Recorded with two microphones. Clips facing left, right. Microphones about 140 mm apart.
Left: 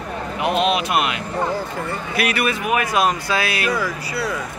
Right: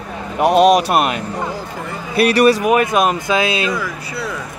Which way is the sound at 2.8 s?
20° right (ahead or behind).